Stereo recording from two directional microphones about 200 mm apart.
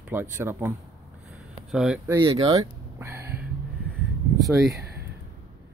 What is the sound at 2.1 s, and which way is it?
Speech, 20° right (ahead or behind).